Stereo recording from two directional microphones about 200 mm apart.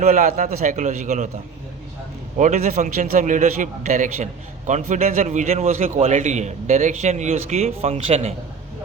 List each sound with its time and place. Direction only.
0.0 s a man's voice: 40° right (ahead or behind)
2.4 s a man's voice: 40° right (ahead or behind)